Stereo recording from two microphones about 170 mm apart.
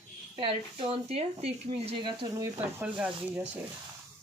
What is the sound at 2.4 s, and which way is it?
Speech, 10° right (ahead or behind).